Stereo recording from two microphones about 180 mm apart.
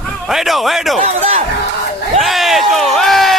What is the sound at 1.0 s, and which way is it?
Speech, 35° right (ahead or behind).